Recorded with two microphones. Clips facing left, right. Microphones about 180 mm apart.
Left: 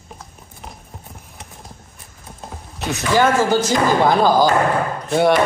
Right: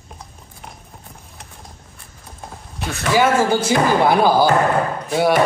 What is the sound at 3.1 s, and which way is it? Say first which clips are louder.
Speech: even; 10° right (ahead or behind).